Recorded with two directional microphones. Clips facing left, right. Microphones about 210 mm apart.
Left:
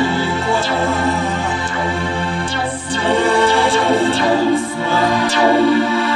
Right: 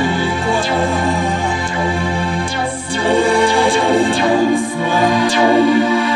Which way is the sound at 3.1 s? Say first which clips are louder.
Right 1 dB; 10° right (ahead or behind).